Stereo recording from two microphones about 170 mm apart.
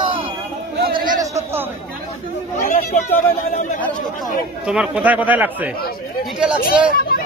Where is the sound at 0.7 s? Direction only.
60° right (ahead or behind).